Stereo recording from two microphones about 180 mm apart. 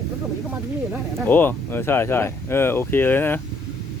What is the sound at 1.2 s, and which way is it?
Speech, 10° left (ahead or behind).